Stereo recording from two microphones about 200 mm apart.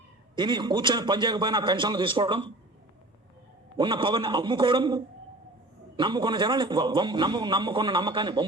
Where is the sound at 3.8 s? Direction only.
25° right (ahead or behind).